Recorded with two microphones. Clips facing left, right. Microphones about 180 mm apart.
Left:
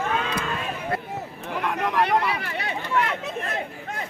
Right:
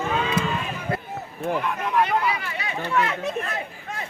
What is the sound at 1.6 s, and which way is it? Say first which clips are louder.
Speech: left 4 dB; 80° left.